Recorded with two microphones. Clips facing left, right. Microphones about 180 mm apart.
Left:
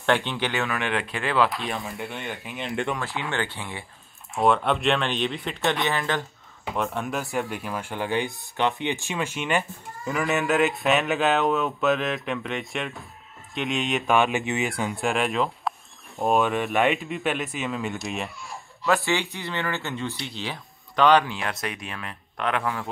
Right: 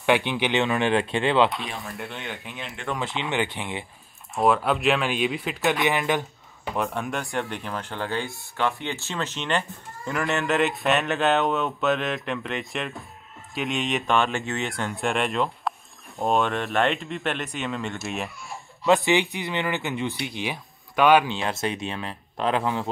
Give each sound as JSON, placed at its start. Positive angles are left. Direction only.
{"t": 0.0, "sound": "speech", "side_deg": -10}
{"t": 1.8, "sound": "speech", "side_deg": 0}
{"t": 3.0, "sound": "speech", "side_deg": -20}
{"t": 4.4, "sound": "speech", "side_deg": -5}
{"t": 5.9, "sound": "speech", "side_deg": -15}
{"t": 6.6, "sound": "speech", "side_deg": 0}
{"t": 14.1, "sound": "speech", "side_deg": 15}
{"t": 14.6, "sound": "speech", "side_deg": 5}
{"t": 18.9, "sound": "speech", "side_deg": -20}
{"t": 21.3, "sound": "speech", "side_deg": -25}